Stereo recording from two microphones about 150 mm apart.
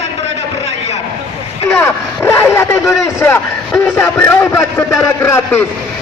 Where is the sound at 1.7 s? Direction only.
20° left (ahead or behind).